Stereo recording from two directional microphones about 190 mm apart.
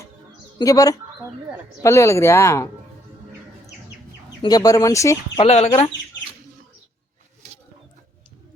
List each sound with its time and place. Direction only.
0.6 s speech: 20° left (ahead or behind)
4.4 s speech: 20° left (ahead or behind)
5.4 s speech: 35° left (ahead or behind)